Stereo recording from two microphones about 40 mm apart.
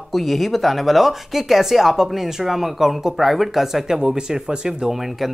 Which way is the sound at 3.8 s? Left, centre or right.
Centre.